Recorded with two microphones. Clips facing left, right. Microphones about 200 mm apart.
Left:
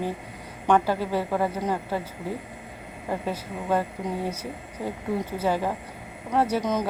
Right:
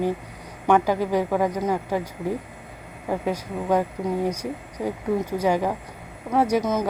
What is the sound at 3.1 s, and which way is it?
A woman's voice, 15° right (ahead or behind).